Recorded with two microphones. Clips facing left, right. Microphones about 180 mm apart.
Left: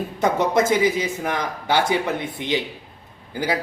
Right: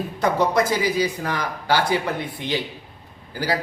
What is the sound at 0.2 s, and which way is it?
Speech, 25° left (ahead or behind).